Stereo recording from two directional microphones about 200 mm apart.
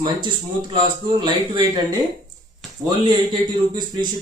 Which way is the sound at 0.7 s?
20° right (ahead or behind).